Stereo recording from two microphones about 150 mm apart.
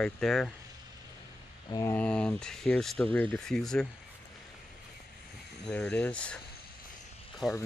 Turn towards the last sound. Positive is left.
turn(degrees=0)  # may be behind; listen again after turning